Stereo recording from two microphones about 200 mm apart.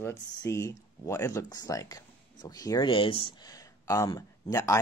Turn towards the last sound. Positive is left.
turn(degrees=20)  # may be behind; listen again after turning